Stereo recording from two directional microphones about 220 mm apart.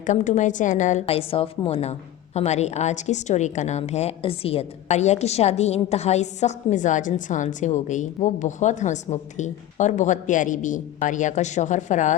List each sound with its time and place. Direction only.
0.0 s a woman's voice: 35° left (ahead or behind)